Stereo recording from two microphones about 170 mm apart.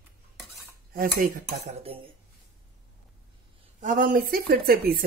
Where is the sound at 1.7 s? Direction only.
35° right (ahead or behind).